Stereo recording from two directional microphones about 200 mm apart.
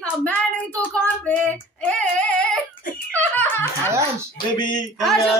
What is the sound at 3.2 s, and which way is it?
Music, 10° left (ahead or behind).